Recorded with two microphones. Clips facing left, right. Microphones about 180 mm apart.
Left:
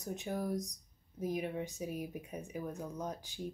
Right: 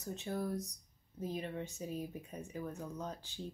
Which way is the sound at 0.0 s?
15° left (ahead or behind).